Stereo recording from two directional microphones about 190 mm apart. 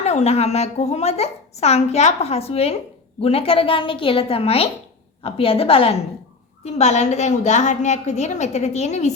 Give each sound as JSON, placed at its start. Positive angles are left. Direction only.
{"t": 0.0, "sound": "a woman's voice", "side_deg": 35}